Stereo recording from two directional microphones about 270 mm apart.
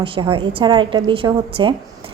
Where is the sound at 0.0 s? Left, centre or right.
Centre.